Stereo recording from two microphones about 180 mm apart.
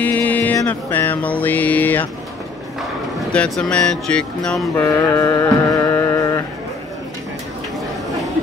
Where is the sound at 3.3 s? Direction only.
5° left (ahead or behind).